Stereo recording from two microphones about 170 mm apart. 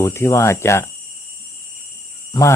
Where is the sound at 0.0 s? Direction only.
15° left (ahead or behind).